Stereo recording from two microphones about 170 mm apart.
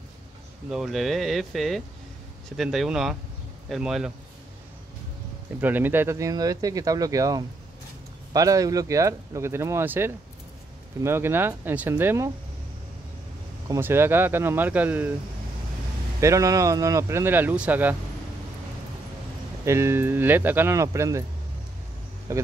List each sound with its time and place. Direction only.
0.7 s speech: centre (ahead or behind)
5.6 s speech: 10° right (ahead or behind)
13.7 s speech: 15° right (ahead or behind)
16.2 s speech: 20° right (ahead or behind)
19.6 s speech: 15° right (ahead or behind)
22.3 s speech: 15° right (ahead or behind)